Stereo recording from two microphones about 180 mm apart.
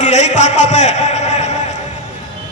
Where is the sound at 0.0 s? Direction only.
40° left (ahead or behind).